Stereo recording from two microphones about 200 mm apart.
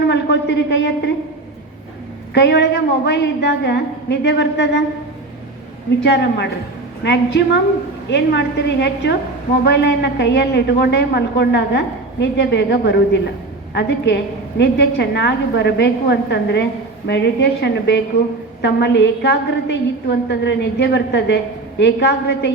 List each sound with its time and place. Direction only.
0.1 s a man's voice: 60° left (ahead or behind)
2.3 s a woman's voice: 60° left (ahead or behind)
6.0 s a woman's voice: 60° left (ahead or behind)